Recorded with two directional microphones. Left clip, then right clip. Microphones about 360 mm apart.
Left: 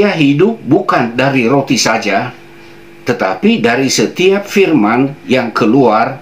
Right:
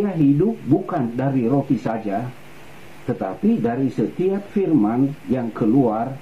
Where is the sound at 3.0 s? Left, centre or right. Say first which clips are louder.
Left 11 dB; centre.